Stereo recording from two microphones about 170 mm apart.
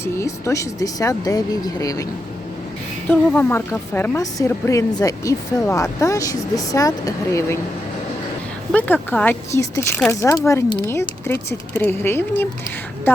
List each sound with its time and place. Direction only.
0.0 s a woman's voice: 15° left (ahead or behind)
3.1 s a woman's voice: 10° left (ahead or behind)
8.7 s speech: 10° left (ahead or behind)